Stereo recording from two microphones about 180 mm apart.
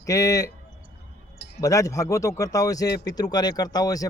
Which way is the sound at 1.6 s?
15° left (ahead or behind).